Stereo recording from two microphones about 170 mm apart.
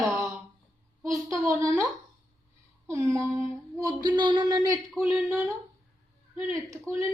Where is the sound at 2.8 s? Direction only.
15° right (ahead or behind).